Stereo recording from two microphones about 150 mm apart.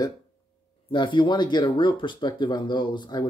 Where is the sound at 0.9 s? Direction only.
35° left (ahead or behind).